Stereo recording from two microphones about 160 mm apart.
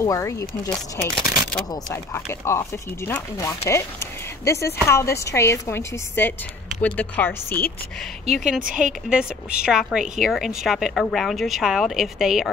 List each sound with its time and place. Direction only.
0.0 s a woman's voice: 20° left (ahead or behind)
1.1 s speech: 25° right (ahead or behind)
1.7 s a woman's voice: 20° left (ahead or behind)
8.5 s speech: 5° right (ahead or behind)